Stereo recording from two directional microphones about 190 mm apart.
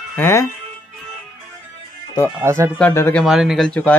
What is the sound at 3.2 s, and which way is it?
Speech, centre (ahead or behind).